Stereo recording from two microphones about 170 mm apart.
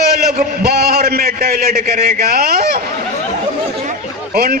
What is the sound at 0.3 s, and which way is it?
A man's voice, 65° right (ahead or behind).